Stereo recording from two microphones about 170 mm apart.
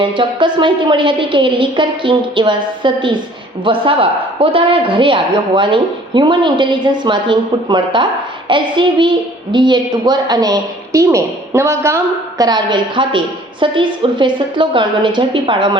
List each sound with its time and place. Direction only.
0.0 s a child's voice: 30° right (ahead or behind)